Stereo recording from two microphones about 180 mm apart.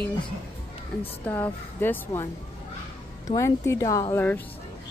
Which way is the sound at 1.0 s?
10° left (ahead or behind).